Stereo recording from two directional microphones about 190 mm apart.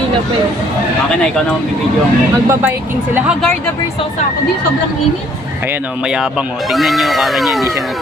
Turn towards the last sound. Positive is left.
turn(degrees=0)  # may be behind; listen again after turning